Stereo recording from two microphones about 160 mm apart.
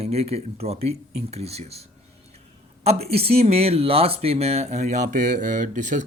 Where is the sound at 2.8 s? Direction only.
40° right (ahead or behind).